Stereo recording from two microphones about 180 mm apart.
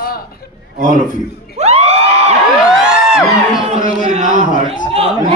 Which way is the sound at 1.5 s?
35° right (ahead or behind).